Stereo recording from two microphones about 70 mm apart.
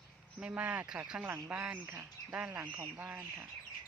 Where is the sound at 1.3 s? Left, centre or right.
Right.